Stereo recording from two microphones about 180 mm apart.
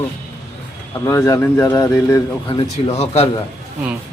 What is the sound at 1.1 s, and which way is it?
A man's voice, 15° left (ahead or behind).